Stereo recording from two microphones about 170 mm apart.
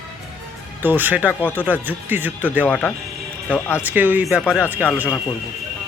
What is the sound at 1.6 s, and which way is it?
Speech, 10° right (ahead or behind).